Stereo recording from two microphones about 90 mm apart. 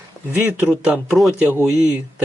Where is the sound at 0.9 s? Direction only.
Centre (ahead or behind).